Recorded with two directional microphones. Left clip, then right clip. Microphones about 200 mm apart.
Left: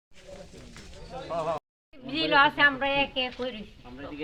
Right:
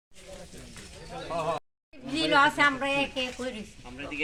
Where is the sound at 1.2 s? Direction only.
15° right (ahead or behind).